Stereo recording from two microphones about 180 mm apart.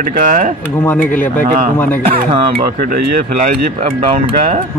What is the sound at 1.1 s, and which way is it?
Speech, 45° left (ahead or behind).